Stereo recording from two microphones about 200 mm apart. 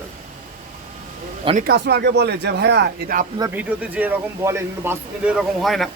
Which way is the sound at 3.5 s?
10° right (ahead or behind).